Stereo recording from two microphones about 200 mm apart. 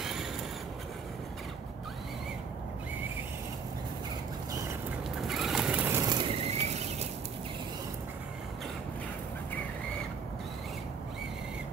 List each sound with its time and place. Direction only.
0.0 s vehicle: centre (ahead or behind)
5.2 s vehicle: centre (ahead or behind); by 7.1 s 30° right (ahead or behind)